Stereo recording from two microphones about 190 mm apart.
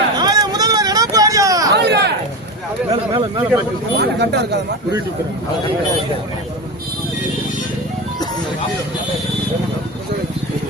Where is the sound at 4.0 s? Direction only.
60° right (ahead or behind).